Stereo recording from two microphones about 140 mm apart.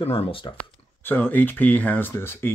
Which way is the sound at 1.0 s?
15° left (ahead or behind).